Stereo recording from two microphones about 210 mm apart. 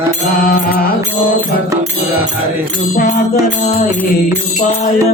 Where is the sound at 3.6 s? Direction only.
35° left (ahead or behind).